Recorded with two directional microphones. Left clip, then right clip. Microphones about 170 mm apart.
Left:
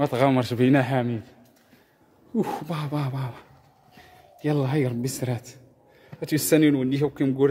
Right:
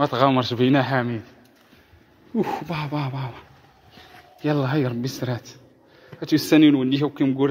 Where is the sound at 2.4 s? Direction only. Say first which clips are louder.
Right 3 dB; 20° left (ahead or behind).